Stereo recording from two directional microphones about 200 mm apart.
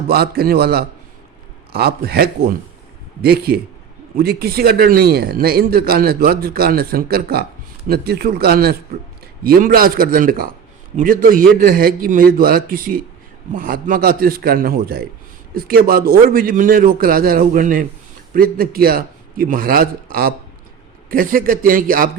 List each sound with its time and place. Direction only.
0.1 s a man's voice: 50° right (ahead or behind)